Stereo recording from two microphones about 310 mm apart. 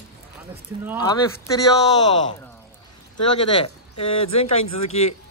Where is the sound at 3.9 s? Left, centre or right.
Centre.